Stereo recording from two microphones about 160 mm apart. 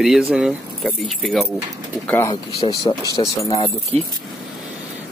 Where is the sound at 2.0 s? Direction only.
10° left (ahead or behind).